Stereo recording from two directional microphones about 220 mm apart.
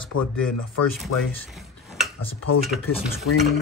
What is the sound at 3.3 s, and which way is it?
Stir, 90° left.